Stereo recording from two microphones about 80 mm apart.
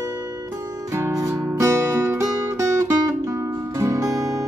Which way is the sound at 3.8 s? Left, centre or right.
Right.